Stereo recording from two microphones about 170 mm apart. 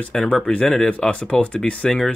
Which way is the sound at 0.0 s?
5° left (ahead or behind).